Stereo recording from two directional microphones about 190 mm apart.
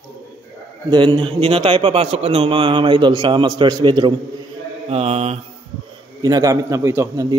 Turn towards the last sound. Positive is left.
turn(degrees=-20)  # may be behind; listen again after turning